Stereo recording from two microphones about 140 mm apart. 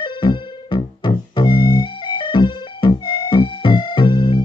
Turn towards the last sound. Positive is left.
turn(degrees=35)  # may be behind; listen again after turning